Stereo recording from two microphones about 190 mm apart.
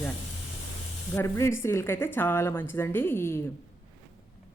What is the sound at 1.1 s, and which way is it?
Speech, 15° left (ahead or behind).